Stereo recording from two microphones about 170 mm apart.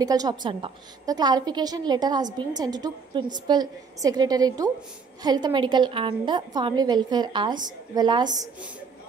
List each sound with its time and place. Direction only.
0.0 s a woman's voice: 20° right (ahead or behind)